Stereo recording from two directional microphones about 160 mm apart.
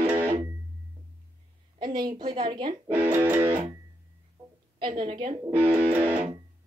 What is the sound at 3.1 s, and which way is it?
Music, 10° right (ahead or behind).